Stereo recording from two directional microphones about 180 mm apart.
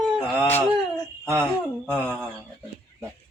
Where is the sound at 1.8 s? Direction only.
Centre (ahead or behind).